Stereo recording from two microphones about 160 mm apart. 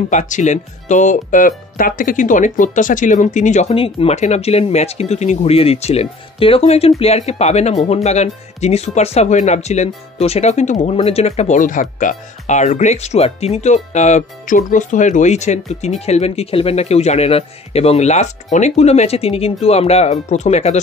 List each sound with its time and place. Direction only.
0.1 s speech: 50° left (ahead or behind)